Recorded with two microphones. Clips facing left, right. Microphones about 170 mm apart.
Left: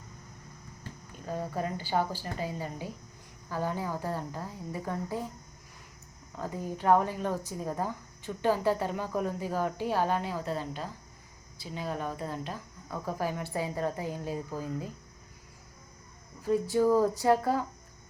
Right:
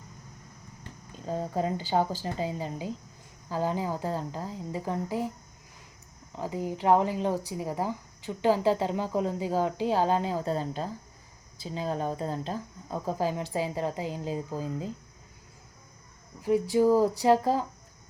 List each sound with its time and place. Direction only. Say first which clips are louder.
1.1 s a woman's voice: right 4 dB; 25° right (ahead or behind)
6.3 s a woman's voice: right 3 dB; 15° right (ahead or behind)
13.1 s a woman's voice: right 3 dB; 20° right (ahead or behind)
16.4 s a woman's voice: right 3 dB; 15° right (ahead or behind)